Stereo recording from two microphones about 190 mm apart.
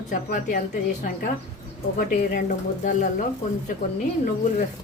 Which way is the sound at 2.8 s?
40° left (ahead or behind).